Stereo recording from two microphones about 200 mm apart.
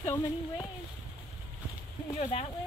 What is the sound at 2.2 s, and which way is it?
Speech, 30° left (ahead or behind).